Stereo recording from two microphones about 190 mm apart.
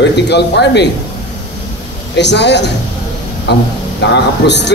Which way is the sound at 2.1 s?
65° left (ahead or behind).